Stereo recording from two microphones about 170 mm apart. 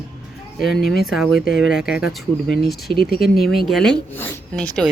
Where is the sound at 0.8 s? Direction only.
65° left (ahead or behind).